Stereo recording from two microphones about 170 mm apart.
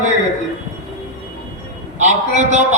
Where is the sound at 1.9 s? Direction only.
45° right (ahead or behind).